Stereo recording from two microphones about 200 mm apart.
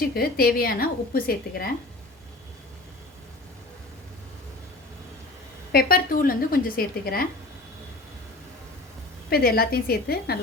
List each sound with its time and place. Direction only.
0.0 s a woman's voice: 50° left (ahead or behind)
5.7 s a woman's voice: 45° left (ahead or behind)
9.3 s a woman's voice: 50° left (ahead or behind)